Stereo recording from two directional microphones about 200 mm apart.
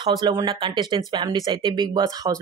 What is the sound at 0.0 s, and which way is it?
Speech, 20° right (ahead or behind).